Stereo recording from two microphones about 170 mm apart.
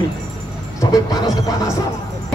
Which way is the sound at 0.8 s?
20° left (ahead or behind).